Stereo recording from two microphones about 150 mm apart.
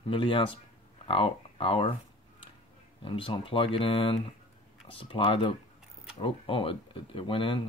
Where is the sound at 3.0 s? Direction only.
35° left (ahead or behind).